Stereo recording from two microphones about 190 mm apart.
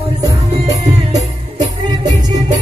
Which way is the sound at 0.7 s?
35° right (ahead or behind).